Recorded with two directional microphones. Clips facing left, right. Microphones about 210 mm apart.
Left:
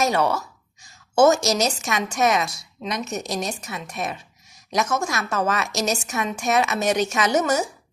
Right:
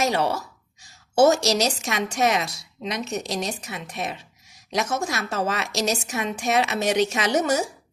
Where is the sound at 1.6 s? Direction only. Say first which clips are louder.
Left 1 dB; 30° right (ahead or behind).